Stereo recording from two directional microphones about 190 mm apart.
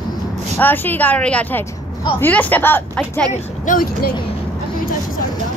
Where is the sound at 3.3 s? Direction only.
45° left (ahead or behind).